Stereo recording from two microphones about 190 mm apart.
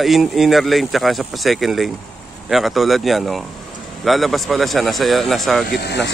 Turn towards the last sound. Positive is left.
turn(degrees=60)  # may be behind; listen again after turning